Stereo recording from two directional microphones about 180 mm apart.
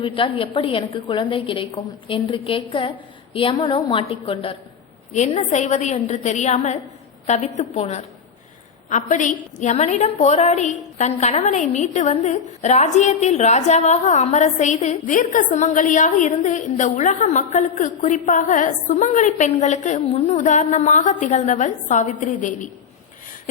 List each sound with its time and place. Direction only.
0.0 s a woman's voice: 30° left (ahead or behind); by 22.7 s 45° left (ahead or behind)